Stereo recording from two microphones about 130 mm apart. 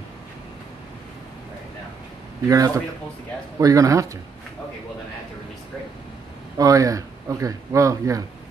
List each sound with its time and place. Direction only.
2.4 s speech: 25° right (ahead or behind)
6.6 s speech: 25° right (ahead or behind)